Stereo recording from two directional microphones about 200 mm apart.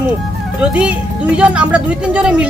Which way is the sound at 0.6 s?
5° right (ahead or behind).